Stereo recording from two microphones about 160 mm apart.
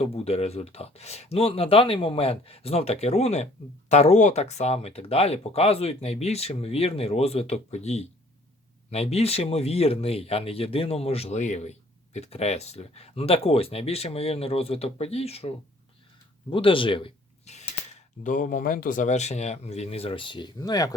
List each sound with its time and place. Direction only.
0.0 s speech: 40° left (ahead or behind); by 20.9 s 20° left (ahead or behind)